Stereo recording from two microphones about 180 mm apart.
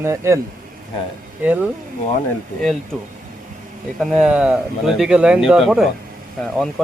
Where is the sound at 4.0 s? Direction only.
Centre (ahead or behind).